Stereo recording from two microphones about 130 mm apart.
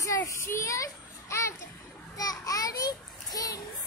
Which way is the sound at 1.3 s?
20° left (ahead or behind).